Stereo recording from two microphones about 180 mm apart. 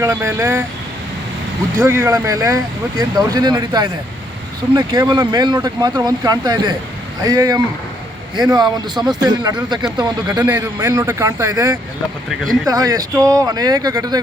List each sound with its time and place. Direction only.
0.0 s speech: 15° right (ahead or behind)
1.8 s speech: 15° right (ahead or behind)